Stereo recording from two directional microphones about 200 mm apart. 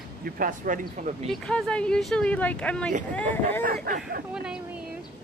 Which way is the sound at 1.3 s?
5° left (ahead or behind).